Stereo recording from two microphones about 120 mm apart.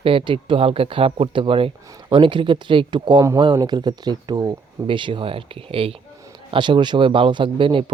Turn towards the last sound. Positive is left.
turn(degrees=-45)  # may be behind; listen again after turning